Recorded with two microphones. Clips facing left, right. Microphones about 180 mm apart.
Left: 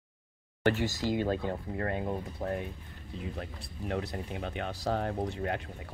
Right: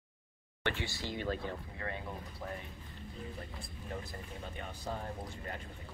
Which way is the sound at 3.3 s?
80° left.